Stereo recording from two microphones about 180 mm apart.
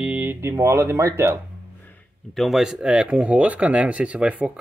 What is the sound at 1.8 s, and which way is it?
Speech, 5° left (ahead or behind).